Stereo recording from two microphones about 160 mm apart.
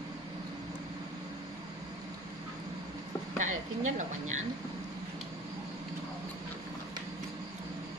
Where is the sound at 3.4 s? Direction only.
50° right (ahead or behind).